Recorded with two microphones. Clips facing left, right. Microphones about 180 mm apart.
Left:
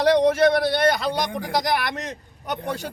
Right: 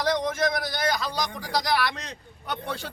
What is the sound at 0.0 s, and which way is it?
A man's voice, 70° left (ahead or behind).